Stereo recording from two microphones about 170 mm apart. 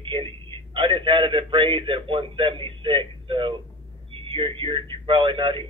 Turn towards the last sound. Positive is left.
turn(degrees=-30)  # may be behind; listen again after turning